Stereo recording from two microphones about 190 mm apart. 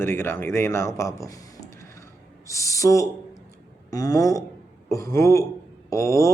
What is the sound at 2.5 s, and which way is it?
A man's voice, 15° left (ahead or behind).